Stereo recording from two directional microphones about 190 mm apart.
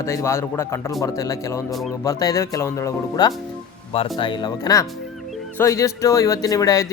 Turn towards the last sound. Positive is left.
turn(degrees=20)  # may be behind; listen again after turning